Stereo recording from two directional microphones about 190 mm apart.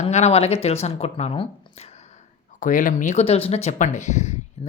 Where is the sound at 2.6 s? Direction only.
45° left (ahead or behind).